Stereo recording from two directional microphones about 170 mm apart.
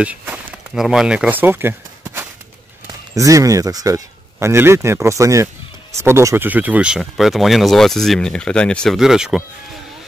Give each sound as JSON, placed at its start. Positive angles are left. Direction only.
{"t": 0.0, "sound": "speech", "side_deg": -10}